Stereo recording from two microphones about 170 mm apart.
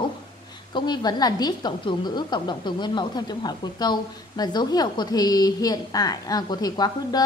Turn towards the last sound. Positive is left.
turn(degrees=25)  # may be behind; listen again after turning